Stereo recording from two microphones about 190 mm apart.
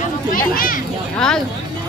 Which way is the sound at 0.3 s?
50° left (ahead or behind).